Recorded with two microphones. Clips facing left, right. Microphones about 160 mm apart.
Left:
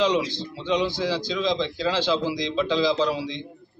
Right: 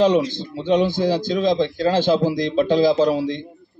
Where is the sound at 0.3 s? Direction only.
50° right (ahead or behind).